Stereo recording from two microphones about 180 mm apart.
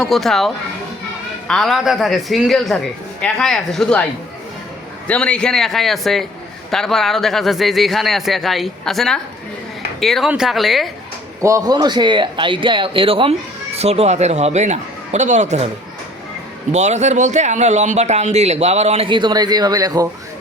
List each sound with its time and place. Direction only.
0.0 s a man's voice: centre (ahead or behind)
5.0 s a man's voice: 5° left (ahead or behind)
11.4 s speech: 20° right (ahead or behind); by 15.7 s 40° right (ahead or behind)
16.7 s speech: 40° right (ahead or behind); by 20.1 s 20° right (ahead or behind)